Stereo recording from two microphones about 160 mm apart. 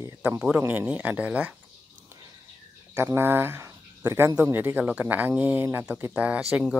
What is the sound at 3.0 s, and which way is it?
Speech, 15° right (ahead or behind).